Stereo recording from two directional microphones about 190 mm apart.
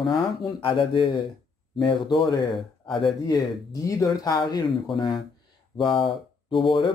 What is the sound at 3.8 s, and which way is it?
Speech, 20° left (ahead or behind).